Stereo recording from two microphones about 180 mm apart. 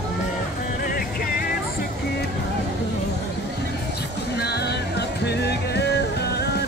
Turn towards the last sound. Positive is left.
turn(degrees=65)  # may be behind; listen again after turning